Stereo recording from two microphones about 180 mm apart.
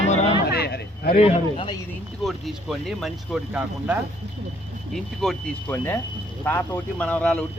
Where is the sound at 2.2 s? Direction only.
Centre (ahead or behind).